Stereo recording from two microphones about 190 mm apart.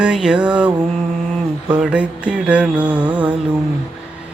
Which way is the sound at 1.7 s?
5° right (ahead or behind).